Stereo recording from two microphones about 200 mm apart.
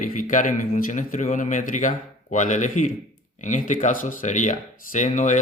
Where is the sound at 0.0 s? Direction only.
40° left (ahead or behind).